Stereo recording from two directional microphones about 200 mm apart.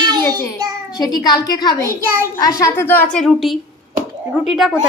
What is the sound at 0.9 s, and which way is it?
A woman's voice, 20° left (ahead or behind).